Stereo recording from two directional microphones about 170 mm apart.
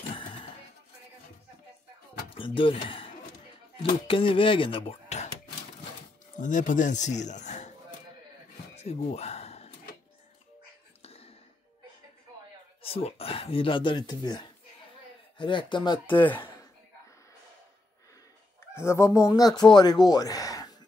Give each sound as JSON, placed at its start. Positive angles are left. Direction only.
{"t": 0.1, "sound": "music", "side_deg": 30}
{"t": 2.2, "sound": "a sound", "side_deg": 30}
{"t": 4.1, "sound": "speech", "side_deg": 30}
{"t": 6.3, "sound": "speech", "side_deg": 50}
{"t": 8.7, "sound": "a sound", "side_deg": 40}
{"t": 11.0, "sound": "a sound", "side_deg": 35}
{"t": 12.8, "sound": "speech", "side_deg": 35}
{"t": 16.1, "sound": "speech", "side_deg": 10}
{"t": 18.8, "sound": "speech", "side_deg": 15}